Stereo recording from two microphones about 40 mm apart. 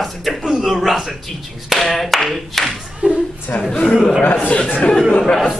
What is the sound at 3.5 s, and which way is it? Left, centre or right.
Speech, left.